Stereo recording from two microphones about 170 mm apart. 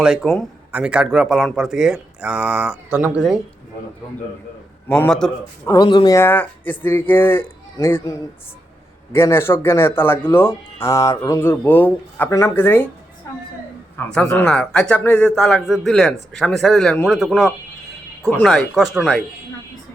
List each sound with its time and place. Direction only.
0.0 s speech: 5° right (ahead or behind)
4.9 s speech: 5° left (ahead or behind)
5.6 s speech: 25° left (ahead or behind)
6.1 s speech: 10° left (ahead or behind)
9.1 s speech: 15° left (ahead or behind)
13.9 s speech: 5° left (ahead or behind)